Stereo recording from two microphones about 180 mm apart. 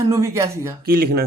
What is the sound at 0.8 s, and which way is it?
Speech, 55° right (ahead or behind).